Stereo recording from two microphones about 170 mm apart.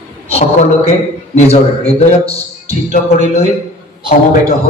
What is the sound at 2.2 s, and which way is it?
A man's voice, 40° left (ahead or behind).